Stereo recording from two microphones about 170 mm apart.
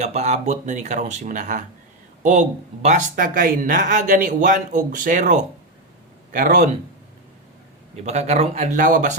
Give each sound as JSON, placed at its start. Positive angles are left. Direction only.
{"t": 0.0, "sound": "speech", "side_deg": -40}
{"t": 8.0, "sound": "speech", "side_deg": -40}